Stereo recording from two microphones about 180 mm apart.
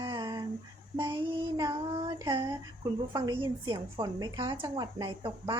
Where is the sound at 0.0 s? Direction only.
25° right (ahead or behind).